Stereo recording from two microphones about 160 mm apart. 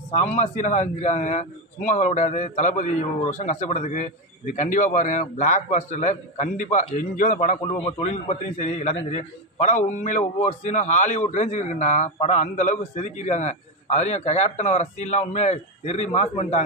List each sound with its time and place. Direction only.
0.1 s a man's voice: 45° left (ahead or behind)